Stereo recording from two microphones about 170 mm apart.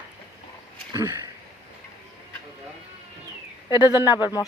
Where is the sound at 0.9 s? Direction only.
15° right (ahead or behind).